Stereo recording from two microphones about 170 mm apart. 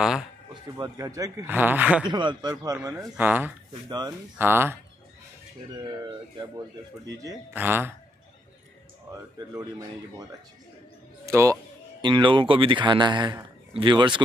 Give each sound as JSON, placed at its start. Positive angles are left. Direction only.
{"t": 0.7, "sound": "a man's voice", "side_deg": -20}
{"t": 2.0, "sound": "speech", "side_deg": -25}
{"t": 3.2, "sound": "a man's voice", "side_deg": -10}
{"t": 5.8, "sound": "speech", "side_deg": -25}
{"t": 7.2, "sound": "a man's voice", "side_deg": -10}
{"t": 9.1, "sound": "speech", "side_deg": -20}
{"t": 11.2, "sound": "speech", "side_deg": -15}
{"t": 12.0, "sound": "speech", "side_deg": -30}